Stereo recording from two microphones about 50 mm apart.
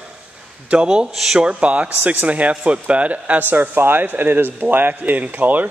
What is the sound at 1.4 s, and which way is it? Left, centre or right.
Speech, right.